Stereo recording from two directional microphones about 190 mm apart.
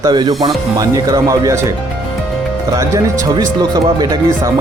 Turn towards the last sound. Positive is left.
turn(degrees=-20)  # may be behind; listen again after turning